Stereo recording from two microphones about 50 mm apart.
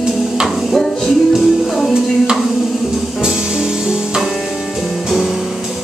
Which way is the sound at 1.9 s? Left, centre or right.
Centre.